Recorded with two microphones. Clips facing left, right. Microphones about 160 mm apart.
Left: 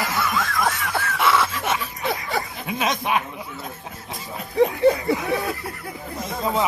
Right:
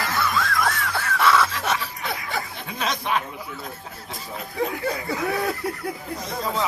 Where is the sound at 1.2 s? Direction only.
20° left (ahead or behind).